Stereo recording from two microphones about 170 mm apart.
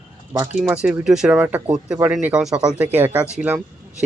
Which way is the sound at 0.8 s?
5° right (ahead or behind).